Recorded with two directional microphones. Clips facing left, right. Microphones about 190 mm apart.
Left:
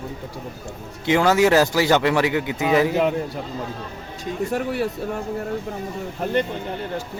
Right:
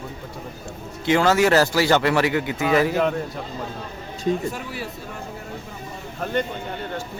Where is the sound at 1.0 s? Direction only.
15° left (ahead or behind).